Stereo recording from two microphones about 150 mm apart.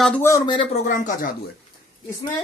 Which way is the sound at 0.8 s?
60° left (ahead or behind).